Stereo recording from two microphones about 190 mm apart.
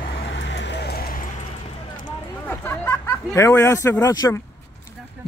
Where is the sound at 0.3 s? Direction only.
70° left (ahead or behind); by 1.2 s 50° left (ahead or behind).